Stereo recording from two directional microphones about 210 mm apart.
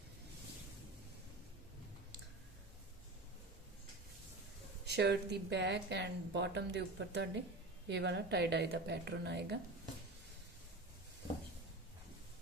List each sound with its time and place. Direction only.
4.9 s a woman's voice: 55° right (ahead or behind)